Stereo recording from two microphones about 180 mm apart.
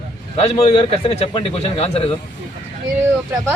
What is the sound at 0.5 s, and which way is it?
A man's voice, 25° left (ahead or behind).